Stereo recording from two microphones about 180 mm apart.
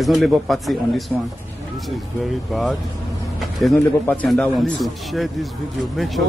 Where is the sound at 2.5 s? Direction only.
Centre (ahead or behind).